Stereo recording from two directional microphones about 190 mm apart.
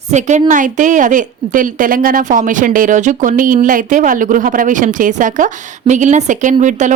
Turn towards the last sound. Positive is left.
turn(degrees=-40)  # may be behind; listen again after turning